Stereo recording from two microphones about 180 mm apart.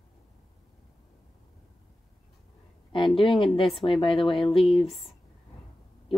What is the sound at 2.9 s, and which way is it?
Speech, 30° left (ahead or behind).